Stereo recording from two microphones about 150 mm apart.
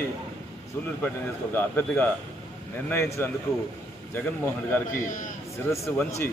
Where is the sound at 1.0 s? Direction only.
10° left (ahead or behind).